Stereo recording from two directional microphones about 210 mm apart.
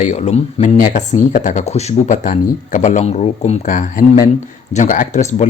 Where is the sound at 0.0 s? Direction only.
30° left (ahead or behind).